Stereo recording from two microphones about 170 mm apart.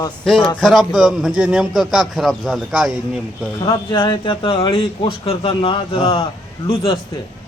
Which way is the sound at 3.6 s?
25° left (ahead or behind).